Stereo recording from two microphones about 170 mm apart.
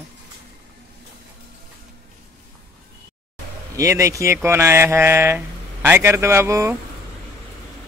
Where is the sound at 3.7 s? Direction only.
20° right (ahead or behind).